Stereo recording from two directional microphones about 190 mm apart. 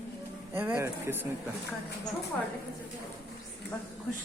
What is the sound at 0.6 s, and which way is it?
Speech, 10° right (ahead or behind).